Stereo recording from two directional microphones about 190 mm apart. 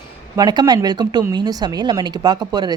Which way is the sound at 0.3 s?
20° right (ahead or behind).